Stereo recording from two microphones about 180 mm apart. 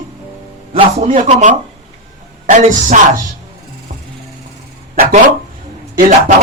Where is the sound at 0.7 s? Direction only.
35° right (ahead or behind).